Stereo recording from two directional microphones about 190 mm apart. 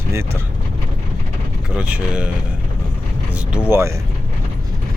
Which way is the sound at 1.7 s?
5° right (ahead or behind).